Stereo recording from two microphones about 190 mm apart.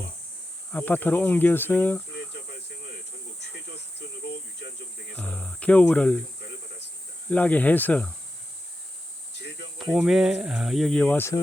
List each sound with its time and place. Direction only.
0.7 s cricket: 10° left (ahead or behind)
4.6 s cricket: 65° left (ahead or behind)
5.1 s cricket: 5° left (ahead or behind)
7.3 s cricket: 10° left (ahead or behind)
9.7 s speech: centre (ahead or behind)